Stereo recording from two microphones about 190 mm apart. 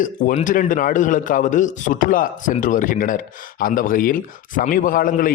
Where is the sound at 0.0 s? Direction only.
45° left (ahead or behind).